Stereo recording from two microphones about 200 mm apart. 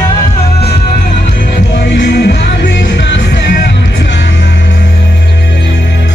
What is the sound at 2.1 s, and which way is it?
Music, 55° left (ahead or behind).